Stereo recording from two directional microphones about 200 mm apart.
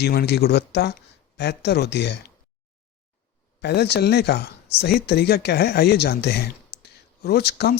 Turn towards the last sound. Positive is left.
turn(degrees=55)  # may be behind; listen again after turning